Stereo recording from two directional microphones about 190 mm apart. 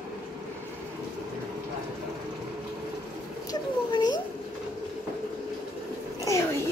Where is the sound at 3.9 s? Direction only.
20° left (ahead or behind).